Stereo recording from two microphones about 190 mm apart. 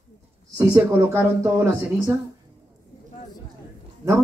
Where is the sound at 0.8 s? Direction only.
10° right (ahead or behind).